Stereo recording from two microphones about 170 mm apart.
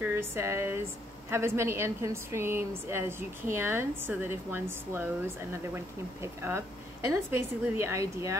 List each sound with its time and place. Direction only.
0.0 s a woman's voice: 15° right (ahead or behind)
6.2 s a woman's voice: 15° right (ahead or behind)